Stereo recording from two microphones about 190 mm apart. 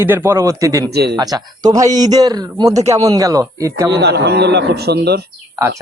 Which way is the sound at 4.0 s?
60° right (ahead or behind).